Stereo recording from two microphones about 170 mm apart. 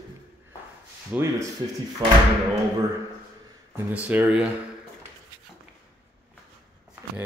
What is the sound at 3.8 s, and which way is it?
Speech, 10° right (ahead or behind).